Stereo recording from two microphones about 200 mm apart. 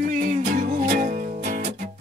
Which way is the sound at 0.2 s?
40° right (ahead or behind).